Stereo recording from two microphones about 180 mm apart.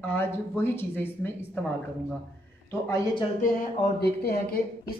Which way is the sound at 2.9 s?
20° left (ahead or behind).